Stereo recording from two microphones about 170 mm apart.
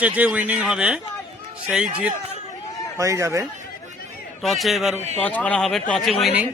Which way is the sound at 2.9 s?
20° right (ahead or behind).